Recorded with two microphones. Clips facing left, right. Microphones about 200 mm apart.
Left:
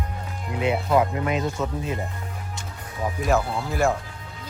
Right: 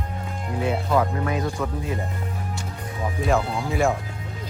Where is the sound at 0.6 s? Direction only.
20° left (ahead or behind).